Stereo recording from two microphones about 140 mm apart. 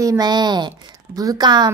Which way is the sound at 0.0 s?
25° right (ahead or behind).